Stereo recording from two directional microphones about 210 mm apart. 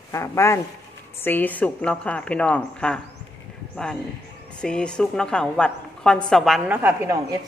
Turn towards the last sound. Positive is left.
turn(degrees=-15)  # may be behind; listen again after turning